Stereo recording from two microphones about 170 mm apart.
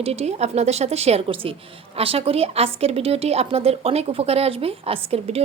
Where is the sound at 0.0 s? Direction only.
40° right (ahead or behind).